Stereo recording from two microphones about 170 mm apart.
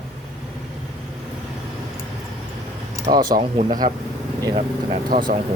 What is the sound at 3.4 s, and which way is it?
Speech, 40° right (ahead or behind).